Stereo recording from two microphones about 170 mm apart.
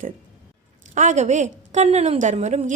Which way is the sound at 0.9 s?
45° right (ahead or behind).